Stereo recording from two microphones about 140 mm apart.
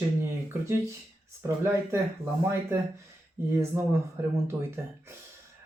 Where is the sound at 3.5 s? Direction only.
20° right (ahead or behind).